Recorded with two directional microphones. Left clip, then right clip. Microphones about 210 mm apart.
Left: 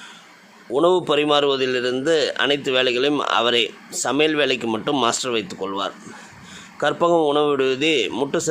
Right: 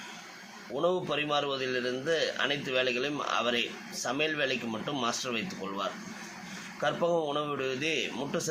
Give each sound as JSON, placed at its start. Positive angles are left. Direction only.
{"t": 0.8, "sound": "a man's voice", "side_deg": 55}